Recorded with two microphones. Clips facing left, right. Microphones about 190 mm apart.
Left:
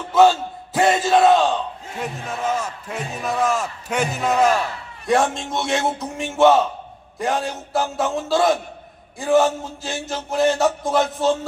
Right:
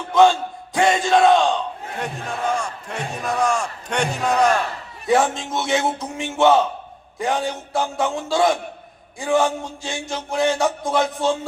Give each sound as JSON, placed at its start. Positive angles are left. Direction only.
{"t": 0.1, "sound": "a man's voice", "side_deg": 5}